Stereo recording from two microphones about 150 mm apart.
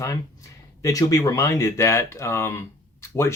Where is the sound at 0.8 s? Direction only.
20° left (ahead or behind).